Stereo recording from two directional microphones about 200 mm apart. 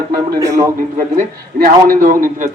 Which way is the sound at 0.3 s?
15° right (ahead or behind).